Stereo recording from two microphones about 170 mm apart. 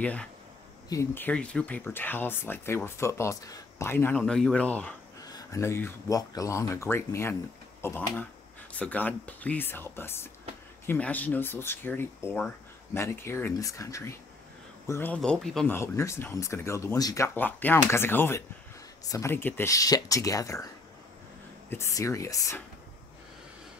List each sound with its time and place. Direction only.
0.0 s speech: 10° left (ahead or behind)
5.2 s speech: 20° left (ahead or behind)
21.6 s speech: 15° left (ahead or behind)